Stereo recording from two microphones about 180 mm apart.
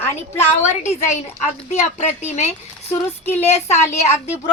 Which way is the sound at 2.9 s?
10° left (ahead or behind).